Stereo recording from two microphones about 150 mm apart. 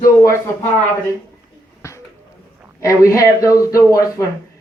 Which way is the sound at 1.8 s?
20° left (ahead or behind).